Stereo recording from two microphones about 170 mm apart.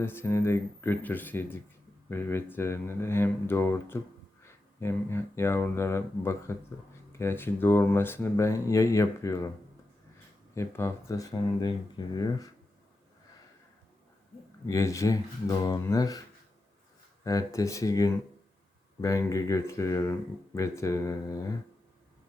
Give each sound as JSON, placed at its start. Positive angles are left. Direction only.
{"t": 0.0, "sound": "speech", "side_deg": 15}
{"t": 10.5, "sound": "speech", "side_deg": 15}
{"t": 14.7, "sound": "speech", "side_deg": 20}
{"t": 17.2, "sound": "speech", "side_deg": 20}